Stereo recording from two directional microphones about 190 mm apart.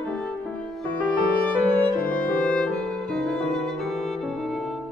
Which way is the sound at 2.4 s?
5° left (ahead or behind).